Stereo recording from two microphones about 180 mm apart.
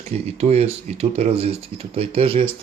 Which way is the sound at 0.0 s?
35° right (ahead or behind).